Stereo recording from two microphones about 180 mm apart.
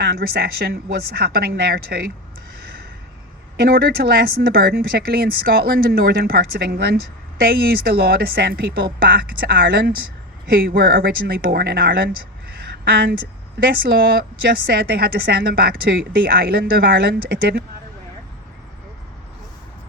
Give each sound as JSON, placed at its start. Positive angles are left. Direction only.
{"t": 0.0, "sound": "a woman's voice", "side_deg": -60}
{"t": 3.7, "sound": "a woman's voice", "side_deg": -60}